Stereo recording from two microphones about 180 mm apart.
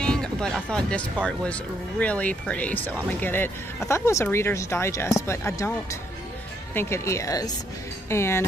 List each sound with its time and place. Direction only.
0.0 s music: 5° left (ahead or behind)
1.2 s speech: 5° left (ahead or behind)